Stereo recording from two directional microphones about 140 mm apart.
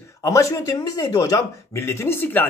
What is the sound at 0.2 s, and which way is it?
Speech, 20° left (ahead or behind).